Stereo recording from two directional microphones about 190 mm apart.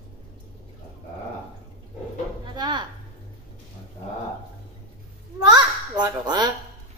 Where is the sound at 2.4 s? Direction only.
25° right (ahead or behind).